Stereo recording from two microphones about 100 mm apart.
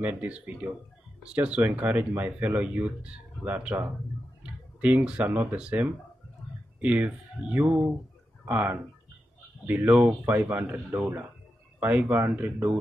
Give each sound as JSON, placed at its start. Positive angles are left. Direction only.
{"t": 0.0, "sound": "speech", "side_deg": -15}